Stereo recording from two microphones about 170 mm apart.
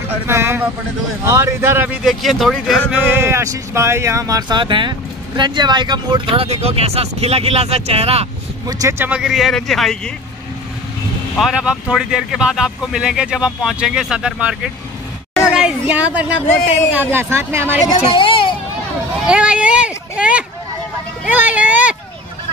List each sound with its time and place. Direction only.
0.3 s speech: 15° right (ahead or behind); by 8.3 s 35° right (ahead or behind)
8.6 s speech: 15° right (ahead or behind); by 10.1 s centre (ahead or behind)
11.3 s speech: 5° right (ahead or behind)
15.3 s a sound: 5° right (ahead or behind)
16.9 s speech: 10° right (ahead or behind)
17.8 s speech: 30° left (ahead or behind)
19.2 s a sound: 5° right (ahead or behind)